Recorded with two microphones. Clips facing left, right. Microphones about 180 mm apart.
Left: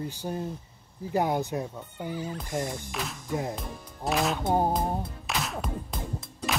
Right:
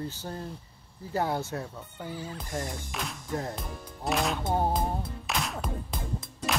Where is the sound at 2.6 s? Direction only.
Centre (ahead or behind).